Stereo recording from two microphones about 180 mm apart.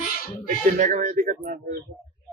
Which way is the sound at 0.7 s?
40° right (ahead or behind).